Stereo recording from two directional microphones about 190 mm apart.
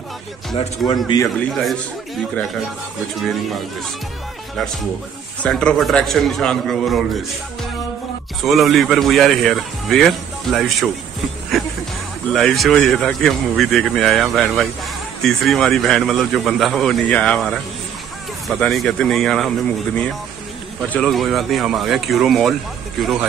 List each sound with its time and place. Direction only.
0.9 s speech: 20° left (ahead or behind)
1.4 s speech: centre (ahead or behind)
3.2 s speech: centre (ahead or behind)
5.4 s speech: 5° left (ahead or behind)
8.5 s speech: centre (ahead or behind)
12.3 s speech: centre (ahead or behind)
20.9 s speech: centre (ahead or behind)